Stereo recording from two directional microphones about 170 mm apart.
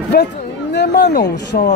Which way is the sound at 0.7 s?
80° left.